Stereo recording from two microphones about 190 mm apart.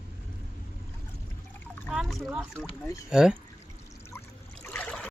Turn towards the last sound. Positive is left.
turn(degrees=10)  # may be behind; listen again after turning